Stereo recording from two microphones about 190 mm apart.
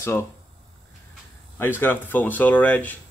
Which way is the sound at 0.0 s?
15° left (ahead or behind).